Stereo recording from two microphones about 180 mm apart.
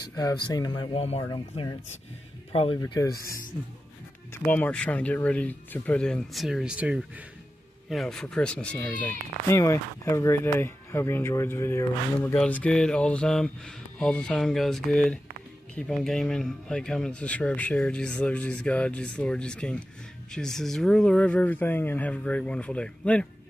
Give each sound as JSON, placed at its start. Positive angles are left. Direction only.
{"t": 0.1, "sound": "speech", "side_deg": 20}
{"t": 2.5, "sound": "speech", "side_deg": 30}
{"t": 2.8, "sound": "speech", "side_deg": 15}
{"t": 4.3, "sound": "speech", "side_deg": 10}